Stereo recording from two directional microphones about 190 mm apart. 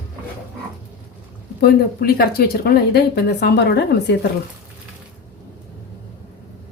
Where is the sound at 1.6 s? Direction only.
50° left (ahead or behind).